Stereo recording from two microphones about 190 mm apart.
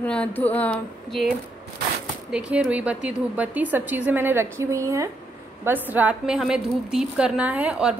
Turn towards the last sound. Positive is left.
turn(degrees=-5)  # may be behind; listen again after turning